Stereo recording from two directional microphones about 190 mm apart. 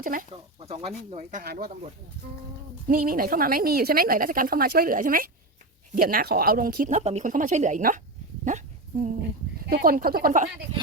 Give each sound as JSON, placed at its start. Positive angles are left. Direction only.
{"t": 0.0, "sound": "a woman's voice", "side_deg": -45}
{"t": 0.6, "sound": "speech", "side_deg": -30}
{"t": 2.8, "sound": "a woman's voice", "side_deg": -50}
{"t": 8.4, "sound": "dog", "side_deg": -40}
{"t": 9.6, "sound": "a woman's voice", "side_deg": -50}